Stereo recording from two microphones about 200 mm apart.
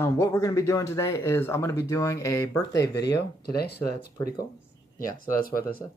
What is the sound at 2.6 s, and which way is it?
Speech, 60° left (ahead or behind).